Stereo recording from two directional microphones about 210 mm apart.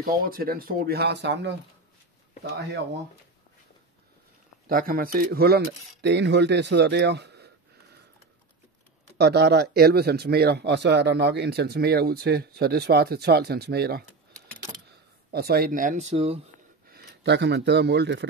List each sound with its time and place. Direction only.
0.0 s speech: 45° right (ahead or behind)
4.6 s speech: 45° right (ahead or behind)
9.2 s speech: 50° right (ahead or behind)
14.7 s a sound: 20° right (ahead or behind)
15.3 s speech: 45° right (ahead or behind); by 16.3 s 30° right (ahead or behind)
16.8 s speech: 45° right (ahead or behind)